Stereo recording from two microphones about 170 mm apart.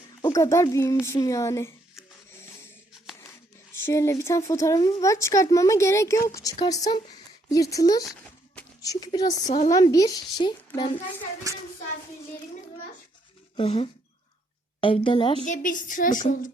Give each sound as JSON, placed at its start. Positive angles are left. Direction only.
{"t": 0.2, "sound": "speech", "side_deg": 20}
{"t": 3.2, "sound": "speech", "side_deg": 15}
{"t": 9.5, "sound": "a woman's voice", "side_deg": 45}
{"t": 9.7, "sound": "speech", "side_deg": 20}
{"t": 11.5, "sound": "hands", "side_deg": -20}
{"t": 13.6, "sound": "a woman's voice", "side_deg": 35}
{"t": 15.4, "sound": "a woman's voice", "side_deg": 50}